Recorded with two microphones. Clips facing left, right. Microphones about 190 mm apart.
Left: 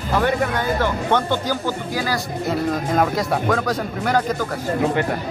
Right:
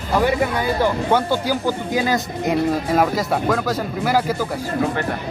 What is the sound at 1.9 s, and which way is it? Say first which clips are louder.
Speech: right 3 dB; 20° right (ahead or behind).